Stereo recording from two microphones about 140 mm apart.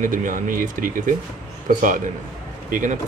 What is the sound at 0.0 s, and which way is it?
Speech, 75° right (ahead or behind).